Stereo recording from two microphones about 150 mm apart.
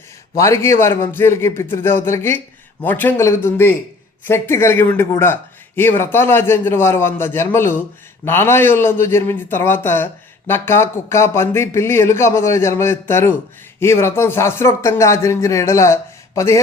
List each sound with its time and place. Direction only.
0.3 s a man's voice: 20° left (ahead or behind)